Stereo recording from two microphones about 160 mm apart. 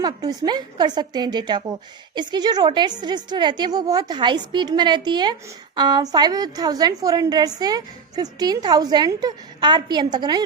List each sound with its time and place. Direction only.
0.0 s a woman's voice: 25° right (ahead or behind)